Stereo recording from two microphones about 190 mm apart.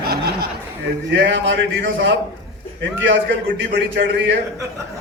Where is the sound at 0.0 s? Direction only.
55° right (ahead or behind).